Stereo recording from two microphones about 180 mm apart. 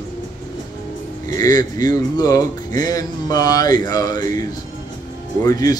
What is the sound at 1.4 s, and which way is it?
Speech, 20° left (ahead or behind).